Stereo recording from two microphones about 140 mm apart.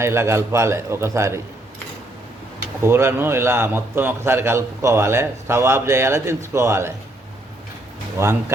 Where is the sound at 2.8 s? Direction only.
15° right (ahead or behind).